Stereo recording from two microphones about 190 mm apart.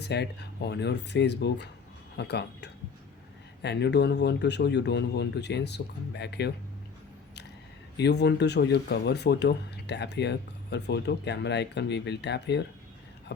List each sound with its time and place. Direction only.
0.0 s speech: 60° left (ahead or behind)
7.9 s speech: 60° left (ahead or behind)